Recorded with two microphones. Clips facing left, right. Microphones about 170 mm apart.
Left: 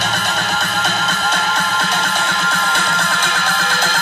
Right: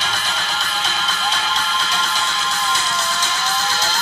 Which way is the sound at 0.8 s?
60° left (ahead or behind).